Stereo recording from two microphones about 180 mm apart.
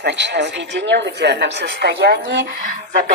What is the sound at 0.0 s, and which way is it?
Speech, 75° right (ahead or behind).